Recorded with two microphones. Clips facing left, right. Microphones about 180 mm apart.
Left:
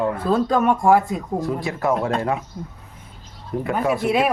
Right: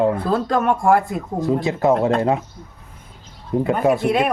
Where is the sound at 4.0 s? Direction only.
5° left (ahead or behind).